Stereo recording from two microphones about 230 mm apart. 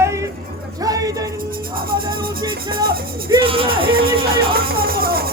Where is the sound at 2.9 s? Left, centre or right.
Right.